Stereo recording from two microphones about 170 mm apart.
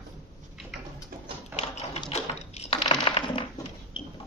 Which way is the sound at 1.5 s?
40° left (ahead or behind).